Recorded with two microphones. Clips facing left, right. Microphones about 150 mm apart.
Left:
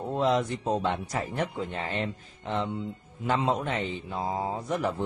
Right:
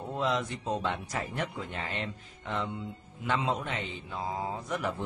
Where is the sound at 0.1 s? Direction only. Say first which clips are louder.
Left 5 dB; 40° left (ahead or behind).